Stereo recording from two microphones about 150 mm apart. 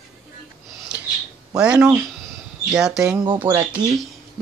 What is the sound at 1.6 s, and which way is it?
Speech, 5° right (ahead or behind).